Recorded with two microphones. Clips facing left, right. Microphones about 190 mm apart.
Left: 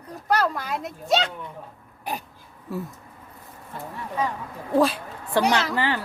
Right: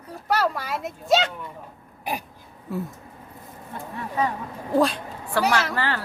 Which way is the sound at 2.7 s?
Centre (ahead or behind).